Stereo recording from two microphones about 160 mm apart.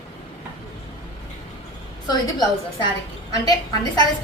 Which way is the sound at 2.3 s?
25° left (ahead or behind).